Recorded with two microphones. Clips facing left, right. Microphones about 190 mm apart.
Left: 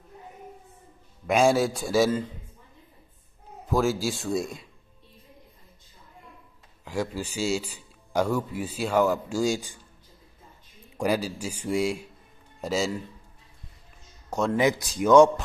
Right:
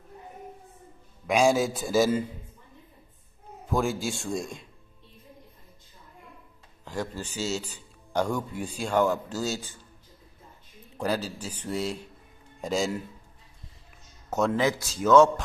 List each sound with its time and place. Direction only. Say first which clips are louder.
1.2 s a man's voice: left 1 dB; centre (ahead or behind)
3.6 s a man's voice: left 3 dB; centre (ahead or behind)
6.8 s a man's voice: left 3 dB; 10° left (ahead or behind)
11.0 s a man's voice: left 3 dB; 10° left (ahead or behind)
14.3 s speech: even; centre (ahead or behind)
14.6 s a man's voice: left 2 dB; 15° left (ahead or behind)